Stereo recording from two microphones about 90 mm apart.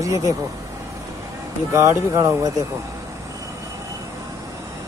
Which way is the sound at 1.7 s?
30° right (ahead or behind).